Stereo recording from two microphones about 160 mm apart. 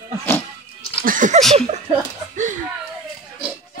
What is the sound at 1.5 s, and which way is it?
Speech, 40° right (ahead or behind).